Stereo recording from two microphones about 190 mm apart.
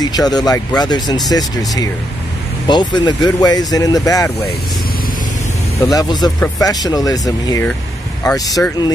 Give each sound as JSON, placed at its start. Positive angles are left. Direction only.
{"t": 0.0, "sound": "speech", "side_deg": 20}
{"t": 5.8, "sound": "speech", "side_deg": 20}